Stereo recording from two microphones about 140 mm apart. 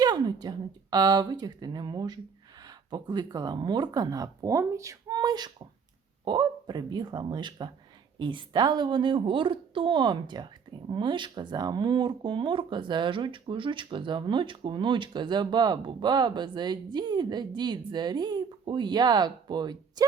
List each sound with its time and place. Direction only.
0.0 s a woman's voice: 30° right (ahead or behind)